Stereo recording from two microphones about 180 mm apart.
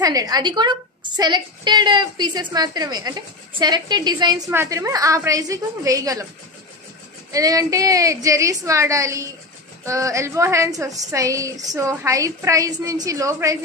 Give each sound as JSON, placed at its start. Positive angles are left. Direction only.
{"t": 0.0, "sound": "a woman's voice", "side_deg": -20}
{"t": 7.3, "sound": "a woman's voice", "side_deg": -20}